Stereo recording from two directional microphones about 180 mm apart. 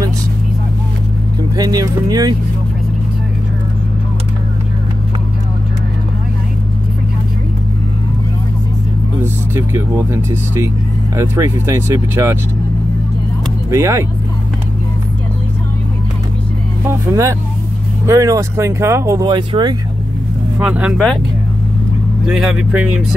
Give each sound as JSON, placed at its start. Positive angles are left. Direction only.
{"t": 1.6, "sound": "speech", "side_deg": -20}
{"t": 9.2, "sound": "speech", "side_deg": -15}
{"t": 13.7, "sound": "speech", "side_deg": -15}
{"t": 16.8, "sound": "speech", "side_deg": -15}
{"t": 20.5, "sound": "speech", "side_deg": -5}
{"t": 22.3, "sound": "speech", "side_deg": -5}